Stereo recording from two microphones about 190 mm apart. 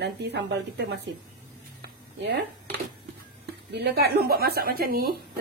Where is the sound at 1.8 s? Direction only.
65° right (ahead or behind).